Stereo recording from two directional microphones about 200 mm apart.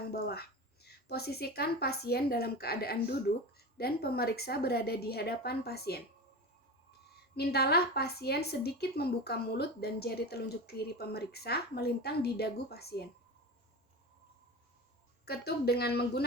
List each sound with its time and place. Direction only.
0.1 s a woman's voice: 50° left (ahead or behind)
7.3 s a woman's voice: 55° left (ahead or behind)
15.2 s a woman's voice: 55° left (ahead or behind)